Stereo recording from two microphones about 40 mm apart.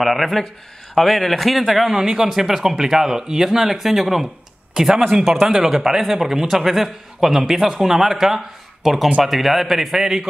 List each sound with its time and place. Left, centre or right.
0.0 s a man's voice: centre